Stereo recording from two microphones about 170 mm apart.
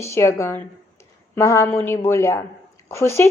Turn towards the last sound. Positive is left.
turn(degrees=15)  # may be behind; listen again after turning